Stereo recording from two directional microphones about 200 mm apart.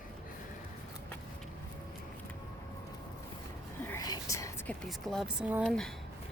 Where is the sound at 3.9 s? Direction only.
20° left (ahead or behind).